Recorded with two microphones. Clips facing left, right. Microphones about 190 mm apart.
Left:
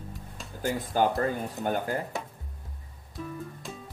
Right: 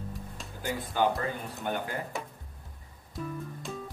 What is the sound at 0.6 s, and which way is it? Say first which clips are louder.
Speech: left 3 dB; 45° left (ahead or behind).